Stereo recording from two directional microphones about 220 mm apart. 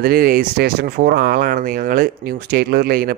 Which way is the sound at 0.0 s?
40° right (ahead or behind).